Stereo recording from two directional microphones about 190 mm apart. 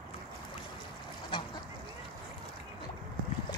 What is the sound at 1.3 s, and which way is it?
Duck, 25° left (ahead or behind).